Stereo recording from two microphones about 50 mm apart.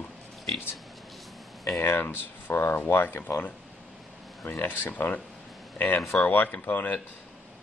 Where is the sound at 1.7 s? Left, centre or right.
Left.